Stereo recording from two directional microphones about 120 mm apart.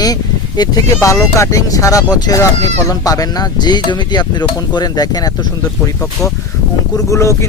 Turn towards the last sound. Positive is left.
turn(degrees=25)  # may be behind; listen again after turning